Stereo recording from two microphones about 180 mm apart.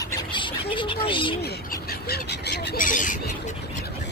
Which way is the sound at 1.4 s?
60° left (ahead or behind).